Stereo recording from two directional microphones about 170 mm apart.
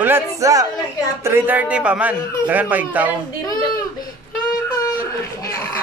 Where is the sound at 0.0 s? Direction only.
15° right (ahead or behind).